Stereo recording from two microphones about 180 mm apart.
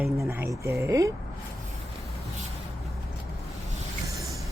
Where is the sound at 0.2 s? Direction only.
15° right (ahead or behind).